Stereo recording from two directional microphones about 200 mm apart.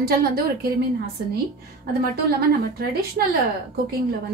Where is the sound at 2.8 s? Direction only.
50° right (ahead or behind).